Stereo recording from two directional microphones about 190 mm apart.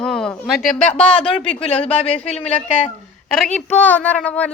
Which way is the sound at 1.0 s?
30° left (ahead or behind).